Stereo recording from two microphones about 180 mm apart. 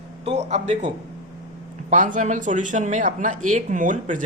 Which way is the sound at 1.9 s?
45° right (ahead or behind).